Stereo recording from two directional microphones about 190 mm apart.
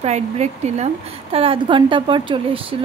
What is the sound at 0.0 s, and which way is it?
Speech, 35° right (ahead or behind).